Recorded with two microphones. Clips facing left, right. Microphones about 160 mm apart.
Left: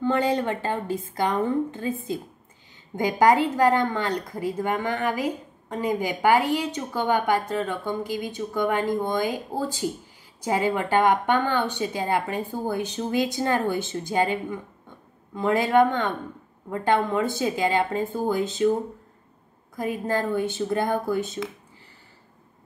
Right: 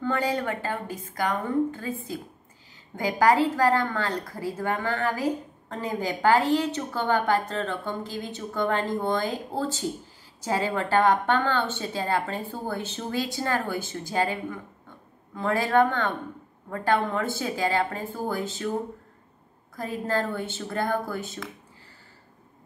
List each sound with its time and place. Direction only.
0.0 s a woman's voice: 20° left (ahead or behind)
19.8 s a woman's voice: 15° left (ahead or behind)